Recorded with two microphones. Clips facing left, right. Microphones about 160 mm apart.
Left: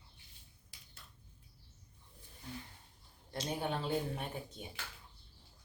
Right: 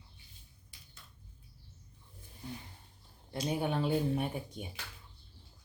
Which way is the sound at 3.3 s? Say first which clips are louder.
Right 5 dB; 10° right (ahead or behind).